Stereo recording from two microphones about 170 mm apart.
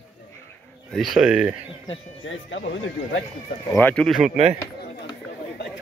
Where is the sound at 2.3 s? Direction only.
90° left.